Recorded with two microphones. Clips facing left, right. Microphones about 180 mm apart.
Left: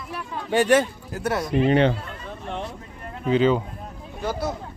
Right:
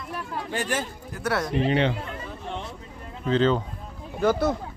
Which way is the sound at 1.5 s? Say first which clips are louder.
Left 6 dB; 50° left (ahead or behind).